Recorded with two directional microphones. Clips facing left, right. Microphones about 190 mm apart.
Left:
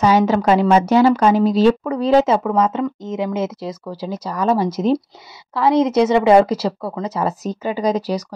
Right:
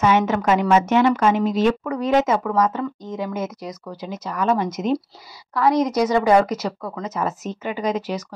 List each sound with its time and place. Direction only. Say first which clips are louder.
0.0 s speech: left 4 dB; 35° left (ahead or behind)